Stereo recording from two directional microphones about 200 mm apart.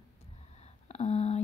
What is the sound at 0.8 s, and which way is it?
Speech, 35° left (ahead or behind).